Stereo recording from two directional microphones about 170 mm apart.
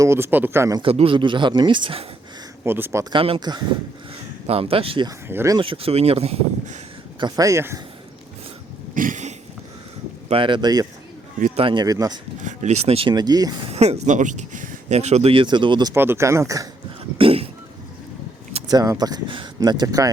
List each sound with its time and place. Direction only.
0.0 s speech: 15° right (ahead or behind)
0.8 s speech: 35° right (ahead or behind)
2.6 s speech: 15° right (ahead or behind); by 5.1 s 30° right (ahead or behind)
5.3 s speech: 15° right (ahead or behind)
5.5 s speech: 35° right (ahead or behind)
7.2 s speech: 25° right (ahead or behind)
9.0 s a sound: 50° right (ahead or behind)
10.2 s speech: 30° right (ahead or behind)
12.4 s speech: 45° right (ahead or behind); by 13.5 s 25° right (ahead or behind)
13.7 s speech: 40° right (ahead or behind)
16.0 s speech: 15° right (ahead or behind)
17.2 s speech: 35° right (ahead or behind)
18.7 s speech: 20° right (ahead or behind)